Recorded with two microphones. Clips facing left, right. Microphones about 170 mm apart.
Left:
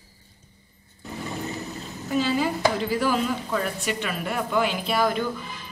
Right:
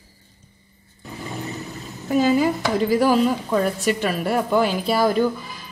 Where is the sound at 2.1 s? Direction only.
45° right (ahead or behind).